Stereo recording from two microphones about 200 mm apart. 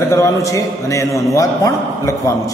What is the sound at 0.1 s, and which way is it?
A man's voice, 15° left (ahead or behind).